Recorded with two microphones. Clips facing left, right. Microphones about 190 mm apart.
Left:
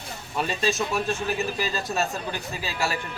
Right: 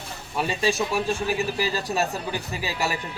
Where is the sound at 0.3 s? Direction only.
10° right (ahead or behind).